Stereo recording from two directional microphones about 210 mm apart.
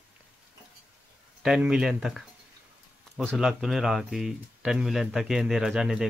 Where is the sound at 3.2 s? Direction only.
Centre (ahead or behind).